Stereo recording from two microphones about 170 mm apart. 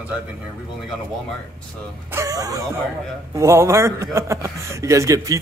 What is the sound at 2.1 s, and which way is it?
Speech, 20° right (ahead or behind).